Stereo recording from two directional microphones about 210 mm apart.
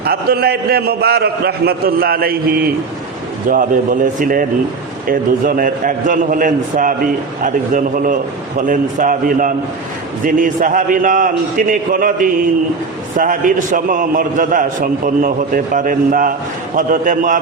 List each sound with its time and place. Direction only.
0.0 s a man's voice: 45° right (ahead or behind)